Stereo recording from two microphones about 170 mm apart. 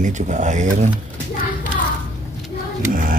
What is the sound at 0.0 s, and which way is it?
Speech, 45° right (ahead or behind).